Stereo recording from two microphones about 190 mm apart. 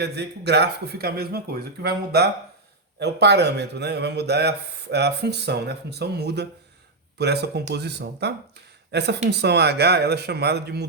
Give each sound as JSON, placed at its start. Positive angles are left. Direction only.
{"t": 0.0, "sound": "a man's voice", "side_deg": -60}